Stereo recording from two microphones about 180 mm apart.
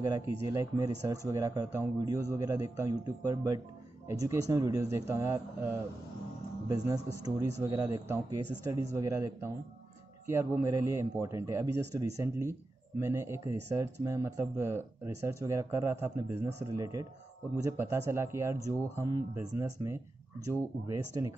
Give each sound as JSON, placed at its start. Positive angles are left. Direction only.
{"t": 0.0, "sound": "speech", "side_deg": -15}